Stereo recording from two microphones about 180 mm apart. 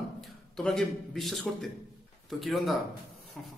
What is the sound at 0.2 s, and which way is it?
A man's voice, centre (ahead or behind).